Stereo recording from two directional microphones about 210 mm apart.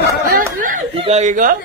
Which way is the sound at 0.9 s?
30° right (ahead or behind).